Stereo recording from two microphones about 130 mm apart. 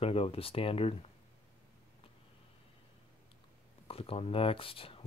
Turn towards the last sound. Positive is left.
turn(degrees=45)  # may be behind; listen again after turning